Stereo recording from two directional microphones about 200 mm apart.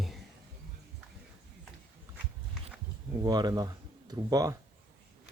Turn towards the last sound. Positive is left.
turn(degrees=-20)  # may be behind; listen again after turning